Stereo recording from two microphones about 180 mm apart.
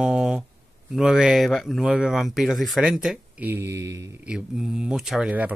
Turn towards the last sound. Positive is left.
turn(degrees=-5)  # may be behind; listen again after turning